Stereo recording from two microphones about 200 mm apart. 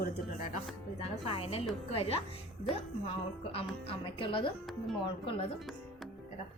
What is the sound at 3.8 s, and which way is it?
Speech, 25° left (ahead or behind).